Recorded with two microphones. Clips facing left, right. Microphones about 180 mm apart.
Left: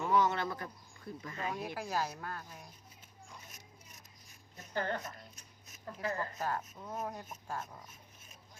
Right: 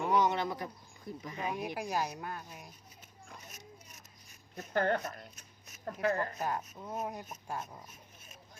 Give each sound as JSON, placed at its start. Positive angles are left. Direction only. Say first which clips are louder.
{"t": 0.0, "sound": "speech", "louder": "right 1 dB", "side_deg": -15}
{"t": 4.5, "sound": "a woman's voice", "louder": "right 6 dB", "side_deg": -60}
{"t": 5.6, "sound": "a sound", "louder": "right 6 dB", "side_deg": -70}
{"t": 6.4, "sound": "speech", "louder": "right 1 dB", "side_deg": -15}